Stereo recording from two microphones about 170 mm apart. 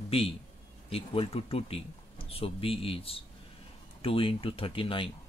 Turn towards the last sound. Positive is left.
turn(degrees=30)  # may be behind; listen again after turning